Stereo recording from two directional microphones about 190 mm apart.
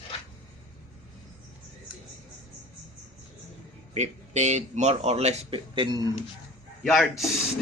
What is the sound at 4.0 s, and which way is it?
Speech, 35° right (ahead or behind).